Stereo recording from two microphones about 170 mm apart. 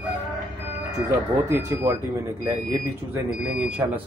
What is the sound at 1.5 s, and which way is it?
Speech, 15° right (ahead or behind).